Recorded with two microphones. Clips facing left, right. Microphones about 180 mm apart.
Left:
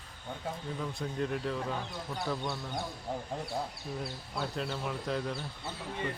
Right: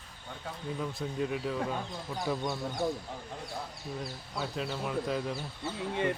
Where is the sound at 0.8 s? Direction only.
5° right (ahead or behind).